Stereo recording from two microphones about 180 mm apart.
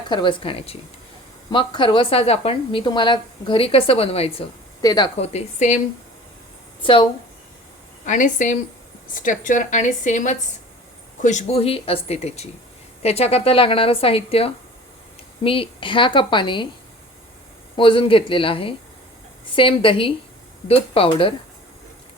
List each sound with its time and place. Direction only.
0.1 s a woman's voice: 25° left (ahead or behind)
4.8 s a woman's voice: 25° left (ahead or behind)
5.2 s a woman's voice: 35° left (ahead or behind)
6.8 s a woman's voice: 30° left (ahead or behind)
8.0 s a woman's voice: 45° left (ahead or behind); by 16.6 s 25° left (ahead or behind)
17.7 s a woman's voice: 30° left (ahead or behind)